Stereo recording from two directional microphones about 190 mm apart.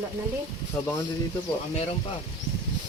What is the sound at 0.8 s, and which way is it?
Speech, 10° left (ahead or behind).